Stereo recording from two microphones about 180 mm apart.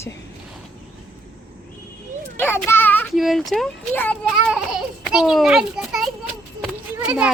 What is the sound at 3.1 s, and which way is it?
A child's voice, centre (ahead or behind).